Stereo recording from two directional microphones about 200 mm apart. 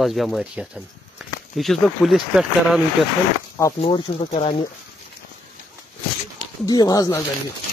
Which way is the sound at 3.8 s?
25° left (ahead or behind).